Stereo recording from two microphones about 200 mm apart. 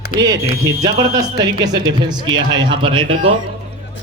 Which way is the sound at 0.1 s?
40° left (ahead or behind).